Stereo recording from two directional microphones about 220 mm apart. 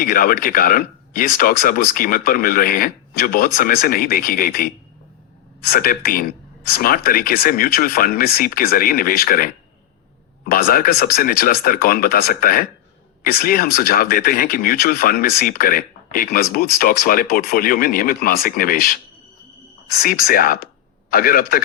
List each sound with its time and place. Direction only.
0.0 s speech: 40° left (ahead or behind)
20.2 s speech: 40° left (ahead or behind)